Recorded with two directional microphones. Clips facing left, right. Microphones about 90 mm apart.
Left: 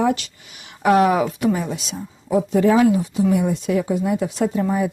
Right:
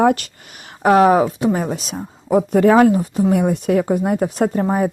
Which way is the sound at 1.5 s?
45° right (ahead or behind).